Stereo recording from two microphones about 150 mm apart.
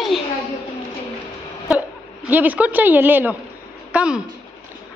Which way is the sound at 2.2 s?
10° right (ahead or behind).